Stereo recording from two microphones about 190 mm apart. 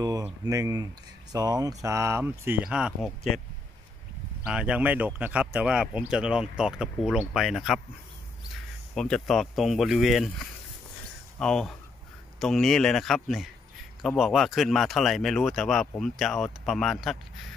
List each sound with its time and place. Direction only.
0.0 s speech: 20° right (ahead or behind)
4.5 s speech: 5° right (ahead or behind)
8.9 s speech: 5° left (ahead or behind)